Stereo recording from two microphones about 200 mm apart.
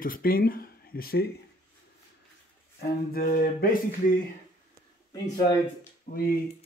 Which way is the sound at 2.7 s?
45° left (ahead or behind).